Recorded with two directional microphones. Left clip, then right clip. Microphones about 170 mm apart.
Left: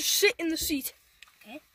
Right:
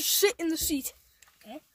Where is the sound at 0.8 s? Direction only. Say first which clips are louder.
Even; centre (ahead or behind).